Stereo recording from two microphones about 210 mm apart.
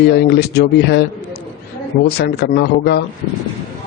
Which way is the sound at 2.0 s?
50° left (ahead or behind).